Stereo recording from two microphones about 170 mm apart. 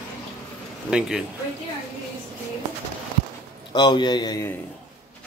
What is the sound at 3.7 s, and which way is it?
Speech, 25° left (ahead or behind).